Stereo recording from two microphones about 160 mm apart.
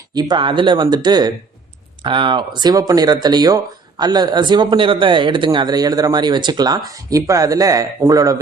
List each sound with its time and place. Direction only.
0.1 s speech: 25° right (ahead or behind)